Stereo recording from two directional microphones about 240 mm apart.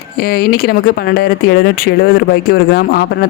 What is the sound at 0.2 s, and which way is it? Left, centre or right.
Speech, left.